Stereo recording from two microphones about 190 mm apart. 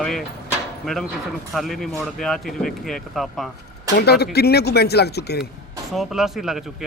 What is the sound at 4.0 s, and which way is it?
Speech, 55° left (ahead or behind).